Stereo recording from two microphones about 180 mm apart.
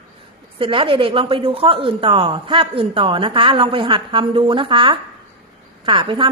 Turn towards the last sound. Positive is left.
turn(degrees=-30)  # may be behind; listen again after turning